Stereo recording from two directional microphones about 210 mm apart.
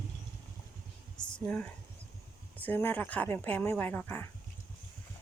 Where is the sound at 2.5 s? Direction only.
10° left (ahead or behind).